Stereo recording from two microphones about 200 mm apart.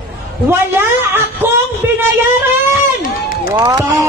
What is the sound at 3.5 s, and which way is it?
Speech, 15° right (ahead or behind).